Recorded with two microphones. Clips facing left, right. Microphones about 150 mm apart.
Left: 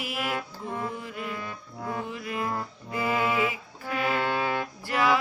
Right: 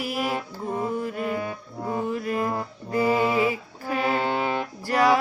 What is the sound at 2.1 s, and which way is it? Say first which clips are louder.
Music: right 5 dB; 45° right (ahead or behind).